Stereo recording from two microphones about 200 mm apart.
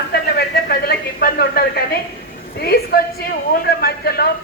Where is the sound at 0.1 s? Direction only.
50° left (ahead or behind).